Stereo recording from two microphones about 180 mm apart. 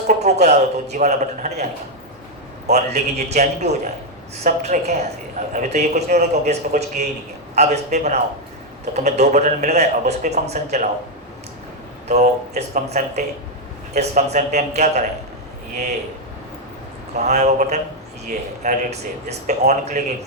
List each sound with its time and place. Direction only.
0.1 s speech: 40° right (ahead or behind)
2.7 s speech: 40° right (ahead or behind)
12.0 s speech: 40° right (ahead or behind)
17.2 s speech: 40° right (ahead or behind)